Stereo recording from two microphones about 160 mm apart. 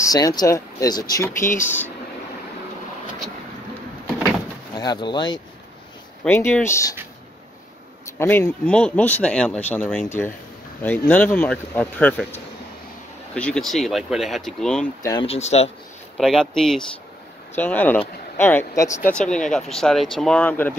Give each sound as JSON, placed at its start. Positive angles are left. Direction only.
{"t": 0.0, "sound": "speech", "side_deg": 25}
{"t": 4.7, "sound": "speech", "side_deg": 25}
{"t": 6.2, "sound": "speech", "side_deg": 15}
{"t": 8.0, "sound": "speech", "side_deg": 15}
{"t": 15.2, "sound": "speech", "side_deg": 40}
{"t": 16.2, "sound": "speech", "side_deg": 0}
{"t": 19.1, "sound": "speech", "side_deg": 5}